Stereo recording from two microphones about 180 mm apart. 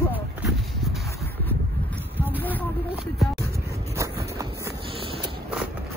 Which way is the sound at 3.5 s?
15° right (ahead or behind).